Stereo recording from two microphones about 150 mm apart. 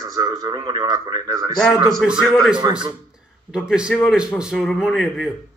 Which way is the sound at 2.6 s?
30° right (ahead or behind).